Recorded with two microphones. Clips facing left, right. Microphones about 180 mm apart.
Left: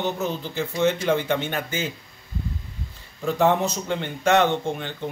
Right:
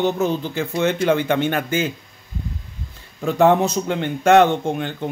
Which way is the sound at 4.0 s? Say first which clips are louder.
Right 6 dB; 50° right (ahead or behind).